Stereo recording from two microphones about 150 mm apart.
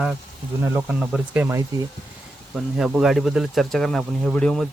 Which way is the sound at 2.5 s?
Centre (ahead or behind).